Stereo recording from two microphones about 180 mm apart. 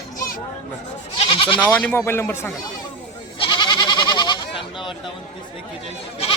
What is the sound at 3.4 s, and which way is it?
Goat, 25° left (ahead or behind).